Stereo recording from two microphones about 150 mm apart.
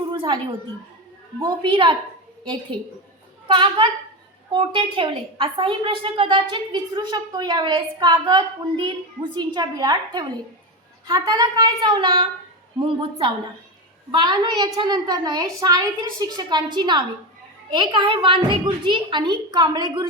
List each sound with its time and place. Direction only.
0.1 s a sound: 30° right (ahead or behind)
1.4 s a woman's voice: 30° right (ahead or behind)
3.4 s a woman's voice: 35° right (ahead or behind)